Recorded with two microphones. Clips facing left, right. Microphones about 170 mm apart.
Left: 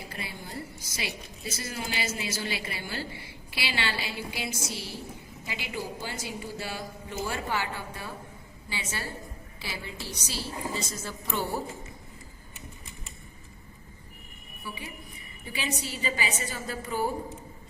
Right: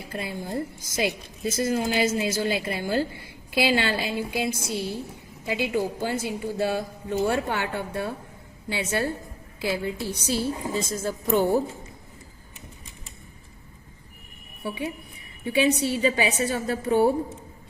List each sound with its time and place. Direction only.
0.1 s a woman's voice: 50° right (ahead or behind)
15.4 s a woman's voice: 65° right (ahead or behind)